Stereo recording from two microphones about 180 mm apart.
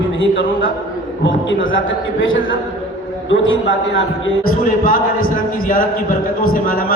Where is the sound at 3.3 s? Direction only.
90° left.